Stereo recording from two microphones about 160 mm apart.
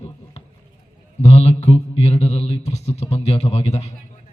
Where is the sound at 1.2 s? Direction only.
40° left (ahead or behind).